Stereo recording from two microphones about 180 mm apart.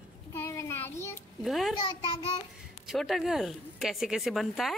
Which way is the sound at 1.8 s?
25° left (ahead or behind).